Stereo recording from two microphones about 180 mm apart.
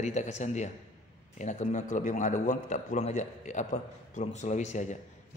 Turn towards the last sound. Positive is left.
turn(degrees=40)  # may be behind; listen again after turning